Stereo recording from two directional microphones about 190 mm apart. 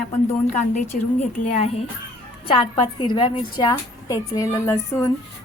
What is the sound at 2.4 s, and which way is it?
A woman's voice, 25° left (ahead or behind).